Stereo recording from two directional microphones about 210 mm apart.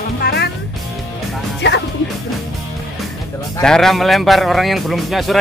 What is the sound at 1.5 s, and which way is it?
Speech, 55° left (ahead or behind).